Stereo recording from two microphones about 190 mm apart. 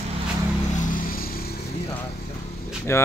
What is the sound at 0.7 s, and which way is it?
Vehicle, 45° left (ahead or behind).